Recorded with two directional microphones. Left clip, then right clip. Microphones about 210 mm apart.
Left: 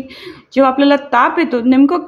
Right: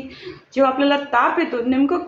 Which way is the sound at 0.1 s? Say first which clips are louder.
Left 9 dB; 35° left (ahead or behind).